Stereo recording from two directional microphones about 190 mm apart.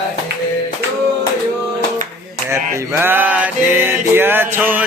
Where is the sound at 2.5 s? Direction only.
15° right (ahead or behind).